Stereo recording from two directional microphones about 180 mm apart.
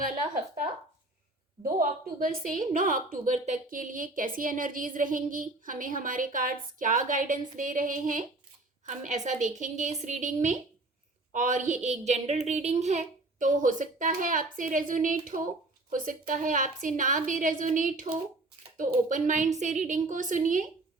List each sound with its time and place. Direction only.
1.6 s a woman's voice: 50° right (ahead or behind)